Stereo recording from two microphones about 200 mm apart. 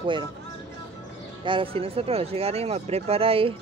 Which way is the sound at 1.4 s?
25° right (ahead or behind).